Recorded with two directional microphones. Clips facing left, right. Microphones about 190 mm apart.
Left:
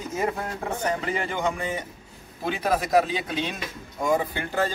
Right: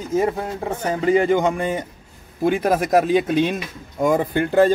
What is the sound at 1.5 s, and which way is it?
Speech, 55° right (ahead or behind).